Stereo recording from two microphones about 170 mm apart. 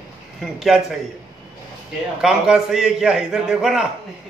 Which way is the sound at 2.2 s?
5° right (ahead or behind).